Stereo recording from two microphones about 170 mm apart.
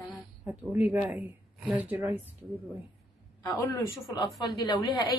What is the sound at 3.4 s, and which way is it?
Speech, 20° left (ahead or behind).